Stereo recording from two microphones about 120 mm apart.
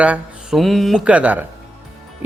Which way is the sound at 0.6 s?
Centre (ahead or behind).